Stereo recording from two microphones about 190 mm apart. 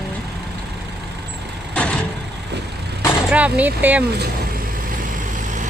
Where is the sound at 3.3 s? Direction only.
5° right (ahead or behind).